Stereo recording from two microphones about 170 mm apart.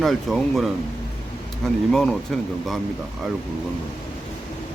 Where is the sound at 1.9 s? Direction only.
5° left (ahead or behind).